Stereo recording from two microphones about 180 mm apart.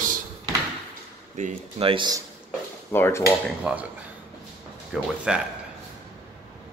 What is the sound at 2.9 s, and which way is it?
Speech, 10° left (ahead or behind).